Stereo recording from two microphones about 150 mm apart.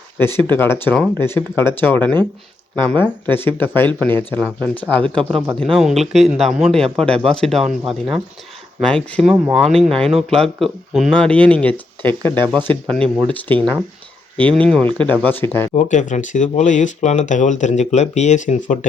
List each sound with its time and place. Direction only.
0.2 s speech: 15° left (ahead or behind)
9.2 s speech: 10° right (ahead or behind); by 15.7 s 15° left (ahead or behind)
15.7 s speech: 50° left (ahead or behind)